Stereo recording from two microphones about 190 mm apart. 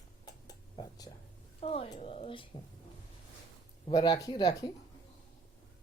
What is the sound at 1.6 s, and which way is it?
Speech, 30° left (ahead or behind).